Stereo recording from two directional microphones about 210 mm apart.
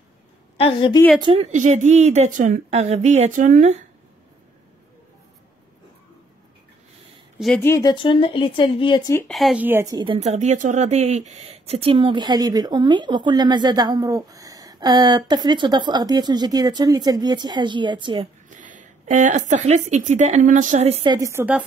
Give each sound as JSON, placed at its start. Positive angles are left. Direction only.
{"t": 0.6, "sound": "a woman's voice", "side_deg": 25}
{"t": 1.2, "sound": "speech", "side_deg": -30}
{"t": 7.3, "sound": "a woman's voice", "side_deg": 5}
{"t": 9.3, "sound": "a woman's voice", "side_deg": 0}
{"t": 18.5, "sound": "speech", "side_deg": -35}